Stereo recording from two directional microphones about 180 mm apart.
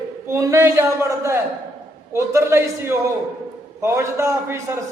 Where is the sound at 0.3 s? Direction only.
15° right (ahead or behind).